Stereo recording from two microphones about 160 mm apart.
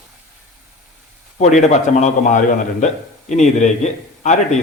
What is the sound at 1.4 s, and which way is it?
A man's voice, 45° left (ahead or behind).